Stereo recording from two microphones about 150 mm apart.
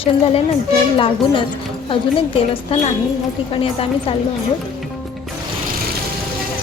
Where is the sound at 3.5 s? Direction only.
40° left (ahead or behind).